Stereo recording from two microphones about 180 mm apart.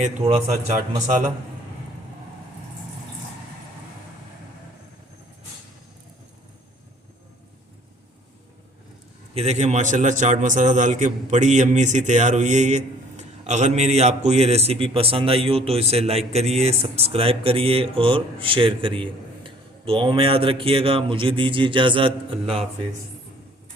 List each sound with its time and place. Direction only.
0.3 s a man's voice: 40° right (ahead or behind)
9.3 s a man's voice: 35° right (ahead or behind)